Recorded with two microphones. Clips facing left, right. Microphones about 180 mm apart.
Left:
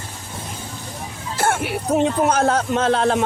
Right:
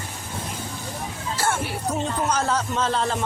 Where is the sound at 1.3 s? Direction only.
60° left (ahead or behind).